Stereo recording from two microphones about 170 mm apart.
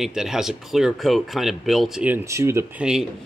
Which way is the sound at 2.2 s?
15° right (ahead or behind).